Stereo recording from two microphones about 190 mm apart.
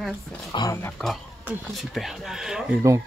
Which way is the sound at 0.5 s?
20° left (ahead or behind).